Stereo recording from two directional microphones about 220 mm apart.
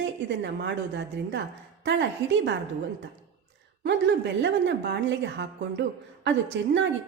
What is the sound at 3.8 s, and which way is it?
A woman's voice, 55° right (ahead or behind).